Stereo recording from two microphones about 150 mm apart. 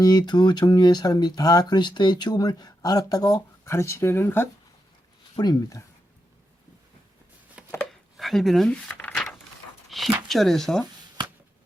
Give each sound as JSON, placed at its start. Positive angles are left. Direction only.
{"t": 0.0, "sound": "speech", "side_deg": 25}
{"t": 5.4, "sound": "speech", "side_deg": 25}
{"t": 7.7, "sound": "a sound", "side_deg": 10}
{"t": 9.9, "sound": "dog", "side_deg": 0}
{"t": 10.2, "sound": "speech", "side_deg": 0}